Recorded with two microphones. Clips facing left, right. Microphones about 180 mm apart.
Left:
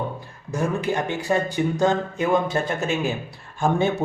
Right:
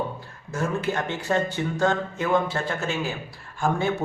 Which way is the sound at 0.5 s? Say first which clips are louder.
Left 3 dB; 15° left (ahead or behind).